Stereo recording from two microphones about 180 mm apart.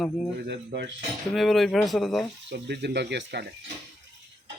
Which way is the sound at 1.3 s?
Centre (ahead or behind).